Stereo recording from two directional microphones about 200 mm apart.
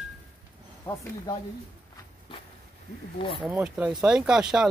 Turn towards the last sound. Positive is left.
turn(degrees=-5)  # may be behind; listen again after turning